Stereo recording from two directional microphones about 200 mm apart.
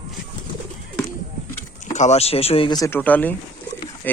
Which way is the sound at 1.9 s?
35° left (ahead or behind).